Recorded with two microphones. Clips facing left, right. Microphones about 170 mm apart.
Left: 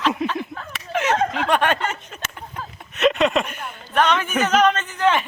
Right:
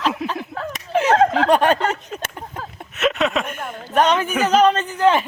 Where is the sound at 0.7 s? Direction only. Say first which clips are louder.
Right 5 dB; 35° right (ahead or behind).